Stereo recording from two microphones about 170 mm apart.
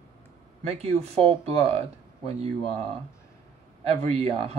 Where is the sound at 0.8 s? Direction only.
35° right (ahead or behind).